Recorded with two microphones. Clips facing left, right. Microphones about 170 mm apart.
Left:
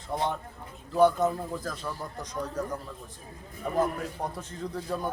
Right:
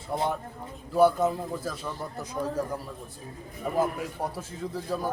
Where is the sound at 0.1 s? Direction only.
10° right (ahead or behind).